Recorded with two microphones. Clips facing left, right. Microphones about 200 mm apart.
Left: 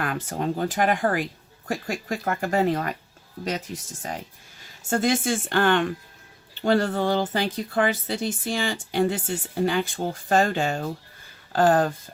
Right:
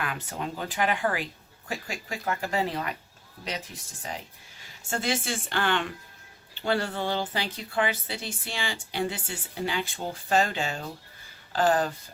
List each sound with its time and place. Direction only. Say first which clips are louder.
0.0 s speech: left 6 dB; 45° left (ahead or behind)
4.9 s speech: left 7 dB; 45° left (ahead or behind)